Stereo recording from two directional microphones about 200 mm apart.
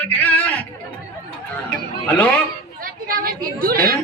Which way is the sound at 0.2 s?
10° left (ahead or behind).